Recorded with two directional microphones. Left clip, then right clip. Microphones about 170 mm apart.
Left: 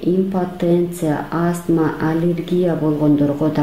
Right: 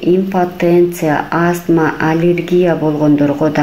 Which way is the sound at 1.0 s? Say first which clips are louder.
Right 6 dB; 15° right (ahead or behind).